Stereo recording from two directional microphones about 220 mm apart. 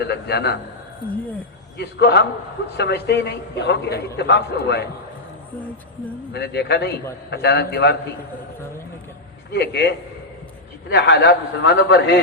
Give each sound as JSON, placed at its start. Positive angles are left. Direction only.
{"t": 0.0, "sound": "a man's voice", "side_deg": 50}
{"t": 1.8, "sound": "a man's voice", "side_deg": 50}
{"t": 6.3, "sound": "a man's voice", "side_deg": 50}
{"t": 9.5, "sound": "a man's voice", "side_deg": 50}